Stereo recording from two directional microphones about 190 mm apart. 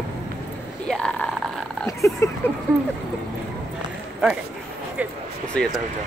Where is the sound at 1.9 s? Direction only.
15° left (ahead or behind).